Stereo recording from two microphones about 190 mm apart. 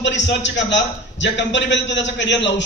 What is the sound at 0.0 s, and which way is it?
A man's voice, 70° left (ahead or behind).